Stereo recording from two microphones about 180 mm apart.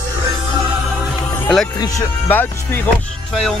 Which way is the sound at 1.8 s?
15° left (ahead or behind).